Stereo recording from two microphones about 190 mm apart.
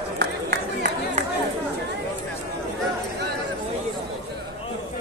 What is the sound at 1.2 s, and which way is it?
Chatter, 35° right (ahead or behind).